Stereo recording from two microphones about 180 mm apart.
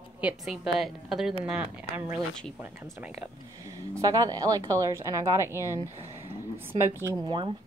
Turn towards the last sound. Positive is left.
turn(degrees=-25)  # may be behind; listen again after turning